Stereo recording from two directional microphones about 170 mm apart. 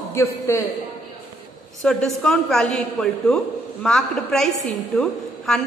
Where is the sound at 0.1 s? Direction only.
15° left (ahead or behind).